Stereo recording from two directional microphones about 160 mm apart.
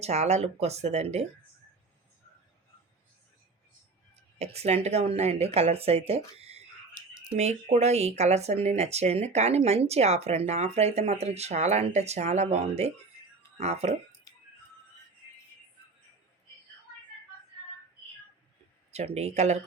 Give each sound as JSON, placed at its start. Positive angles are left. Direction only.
{"t": 0.0, "sound": "speech", "side_deg": -45}
{"t": 4.1, "sound": "speech", "side_deg": -40}
{"t": 18.9, "sound": "speech", "side_deg": -40}